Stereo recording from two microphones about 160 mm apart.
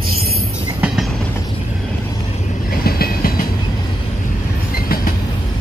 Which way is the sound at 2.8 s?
70° left (ahead or behind).